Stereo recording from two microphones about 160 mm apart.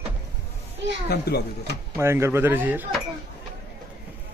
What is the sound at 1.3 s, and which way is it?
Speech, 80° left.